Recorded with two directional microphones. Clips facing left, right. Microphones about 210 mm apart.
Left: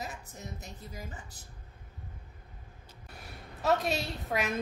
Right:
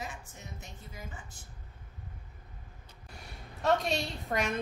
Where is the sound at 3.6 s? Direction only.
5° left (ahead or behind).